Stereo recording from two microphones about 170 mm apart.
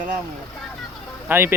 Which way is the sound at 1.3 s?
15° right (ahead or behind).